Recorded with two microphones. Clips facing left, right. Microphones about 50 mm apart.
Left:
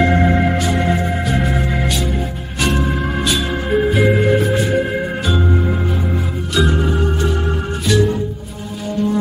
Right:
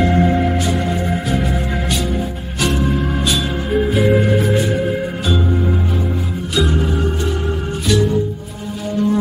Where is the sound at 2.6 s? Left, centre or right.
Centre.